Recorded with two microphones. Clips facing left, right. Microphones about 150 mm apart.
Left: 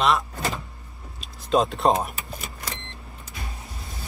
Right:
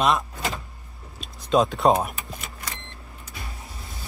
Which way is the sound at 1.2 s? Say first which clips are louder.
Right 1 dB; centre (ahead or behind).